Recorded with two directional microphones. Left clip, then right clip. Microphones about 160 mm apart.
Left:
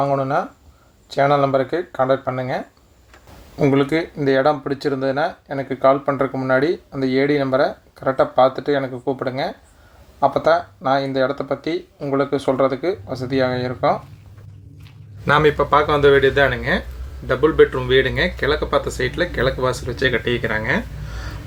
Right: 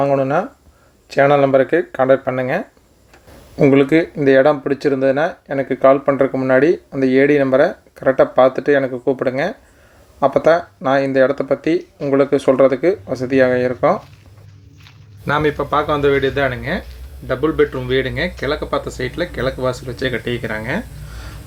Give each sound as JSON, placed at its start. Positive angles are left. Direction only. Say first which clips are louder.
{"t": 0.0, "sound": "speech", "louder": "right 3 dB", "side_deg": -25}
{"t": 15.2, "sound": "speech", "louder": "left 2 dB", "side_deg": -5}